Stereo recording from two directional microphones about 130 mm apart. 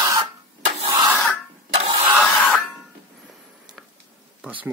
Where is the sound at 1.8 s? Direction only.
55° right (ahead or behind).